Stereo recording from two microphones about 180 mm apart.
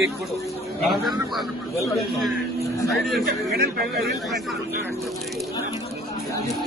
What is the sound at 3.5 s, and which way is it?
Speech, 60° right (ahead or behind).